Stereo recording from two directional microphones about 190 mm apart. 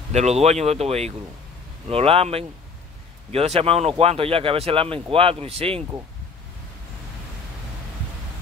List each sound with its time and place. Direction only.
0.1 s speech: 35° right (ahead or behind)